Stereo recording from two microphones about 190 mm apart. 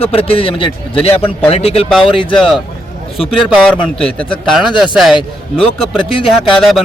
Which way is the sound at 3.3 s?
Centre (ahead or behind).